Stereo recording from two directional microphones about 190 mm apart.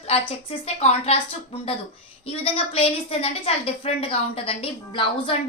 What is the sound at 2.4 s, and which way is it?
A woman's voice, 30° left (ahead or behind).